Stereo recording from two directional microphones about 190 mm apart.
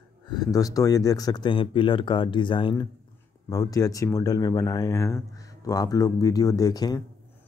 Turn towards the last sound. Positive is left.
turn(degrees=20)  # may be behind; listen again after turning